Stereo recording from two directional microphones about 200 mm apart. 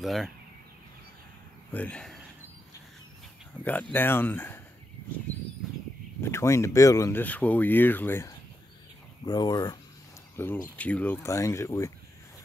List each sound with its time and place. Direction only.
0.0 s speech: centre (ahead or behind)
1.7 s speech: 5° left (ahead or behind)
3.6 s speech: 10° left (ahead or behind)
6.2 s speech: 15° left (ahead or behind)